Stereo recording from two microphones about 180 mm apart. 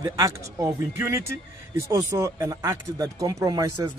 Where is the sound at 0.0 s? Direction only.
20° right (ahead or behind).